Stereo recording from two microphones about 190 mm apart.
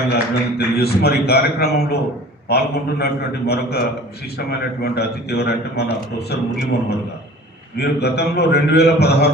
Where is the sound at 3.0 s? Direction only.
55° left (ahead or behind).